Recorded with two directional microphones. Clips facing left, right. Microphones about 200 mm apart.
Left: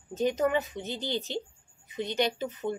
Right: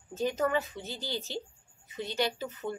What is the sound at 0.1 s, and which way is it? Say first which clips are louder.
A woman's voice: left 3 dB; 20° left (ahead or behind).